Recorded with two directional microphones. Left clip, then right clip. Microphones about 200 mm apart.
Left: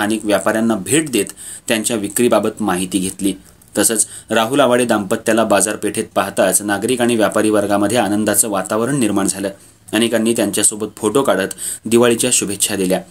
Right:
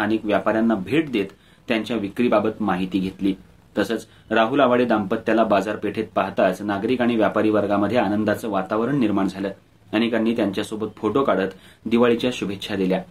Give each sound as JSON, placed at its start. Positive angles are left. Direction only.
{"t": 0.0, "sound": "speech", "side_deg": 45}